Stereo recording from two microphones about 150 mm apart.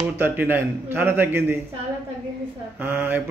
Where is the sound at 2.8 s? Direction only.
10° right (ahead or behind).